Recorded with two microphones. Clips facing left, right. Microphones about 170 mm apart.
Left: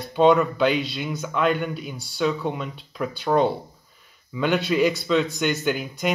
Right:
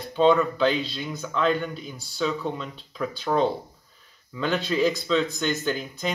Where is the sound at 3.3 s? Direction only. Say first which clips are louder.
Left 4 dB; 20° left (ahead or behind).